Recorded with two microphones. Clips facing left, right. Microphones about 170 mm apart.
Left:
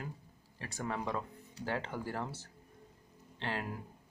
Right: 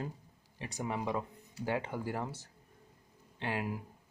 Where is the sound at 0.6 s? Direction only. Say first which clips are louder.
Right 2 dB; 15° right (ahead or behind).